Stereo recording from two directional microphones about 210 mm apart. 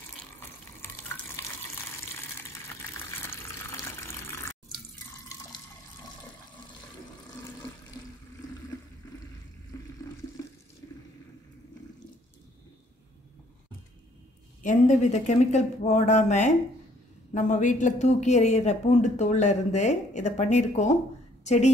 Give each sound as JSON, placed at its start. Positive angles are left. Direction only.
{"t": 0.8, "sound": "water tap", "side_deg": 10}
{"t": 2.7, "sound": "water", "side_deg": 10}
{"t": 9.7, "sound": "water", "side_deg": 15}
{"t": 14.6, "sound": "speech", "side_deg": 35}